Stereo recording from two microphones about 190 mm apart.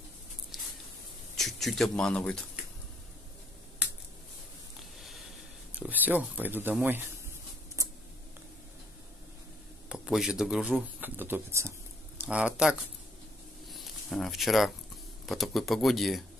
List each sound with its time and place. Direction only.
1.3 s speech: centre (ahead or behind)
4.9 s a sound: centre (ahead or behind)
5.7 s speech: 10° right (ahead or behind)
9.8 s speech: centre (ahead or behind)
13.7 s a sound: centre (ahead or behind)
15.2 s speech: centre (ahead or behind)